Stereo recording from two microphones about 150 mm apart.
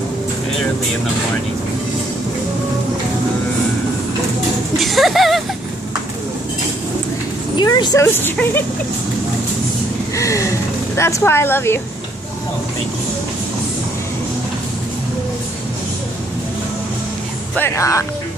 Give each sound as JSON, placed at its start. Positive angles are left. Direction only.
{"t": 4.7, "sound": "speech", "side_deg": 0}
{"t": 7.5, "sound": "speech", "side_deg": 30}
{"t": 10.1, "sound": "a sound", "side_deg": 20}
{"t": 11.0, "sound": "speech", "side_deg": 20}
{"t": 17.6, "sound": "speech", "side_deg": 20}